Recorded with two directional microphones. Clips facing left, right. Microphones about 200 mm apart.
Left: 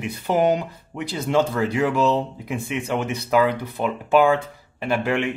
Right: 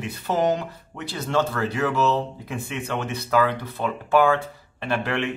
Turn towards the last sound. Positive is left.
turn(degrees=10)  # may be behind; listen again after turning